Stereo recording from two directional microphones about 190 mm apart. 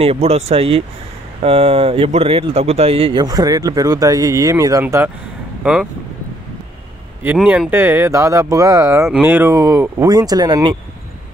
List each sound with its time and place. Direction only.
0.0 s speech: 30° right (ahead or behind); by 5.9 s 5° right (ahead or behind)
7.2 s speech: 5° right (ahead or behind); by 10.8 s 25° right (ahead or behind)